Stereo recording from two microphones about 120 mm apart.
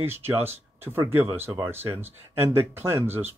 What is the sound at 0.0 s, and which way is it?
Speech, 20° right (ahead or behind).